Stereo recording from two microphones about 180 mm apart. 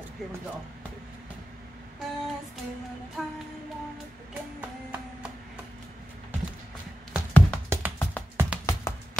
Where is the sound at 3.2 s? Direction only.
Centre (ahead or behind).